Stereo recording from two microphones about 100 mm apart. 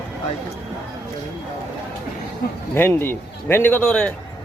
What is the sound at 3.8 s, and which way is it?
Speech, 10° left (ahead or behind).